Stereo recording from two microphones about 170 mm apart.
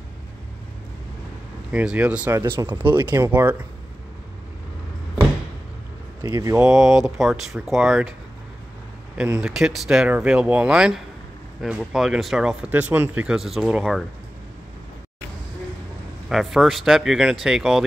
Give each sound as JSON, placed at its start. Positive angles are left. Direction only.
{"t": 1.7, "sound": "speech", "side_deg": -5}
{"t": 3.3, "sound": "speech", "side_deg": -10}
{"t": 6.2, "sound": "speech", "side_deg": -20}
{"t": 6.5, "sound": "speech", "side_deg": -5}
{"t": 9.1, "sound": "speech", "side_deg": -5}
{"t": 16.3, "sound": "speech", "side_deg": 0}